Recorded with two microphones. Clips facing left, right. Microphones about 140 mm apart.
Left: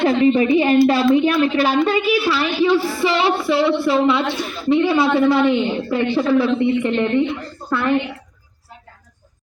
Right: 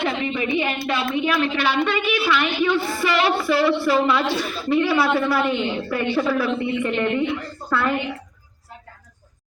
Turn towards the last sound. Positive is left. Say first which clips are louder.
# left 3 dB
turn(degrees=20)  # may be behind; listen again after turning